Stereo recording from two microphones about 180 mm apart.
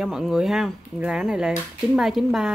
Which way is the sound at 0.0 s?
Centre (ahead or behind).